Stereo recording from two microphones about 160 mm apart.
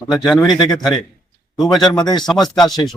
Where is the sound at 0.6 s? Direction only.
25° left (ahead or behind).